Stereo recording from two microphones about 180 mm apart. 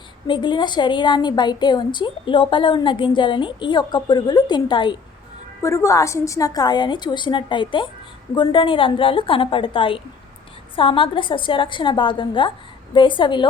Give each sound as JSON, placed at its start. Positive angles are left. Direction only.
{"t": 0.3, "sound": "a woman's voice", "side_deg": 25}